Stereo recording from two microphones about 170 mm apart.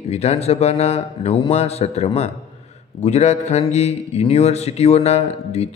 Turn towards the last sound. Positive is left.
turn(degrees=40)  # may be behind; listen again after turning